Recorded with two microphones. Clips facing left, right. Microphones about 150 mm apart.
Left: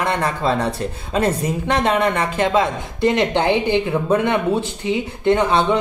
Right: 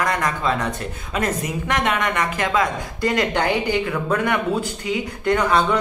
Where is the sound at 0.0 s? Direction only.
30° left (ahead or behind).